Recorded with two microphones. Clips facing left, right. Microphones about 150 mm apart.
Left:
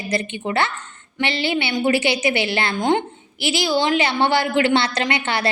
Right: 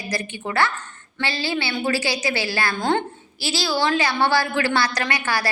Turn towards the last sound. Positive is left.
turn(degrees=25)  # may be behind; listen again after turning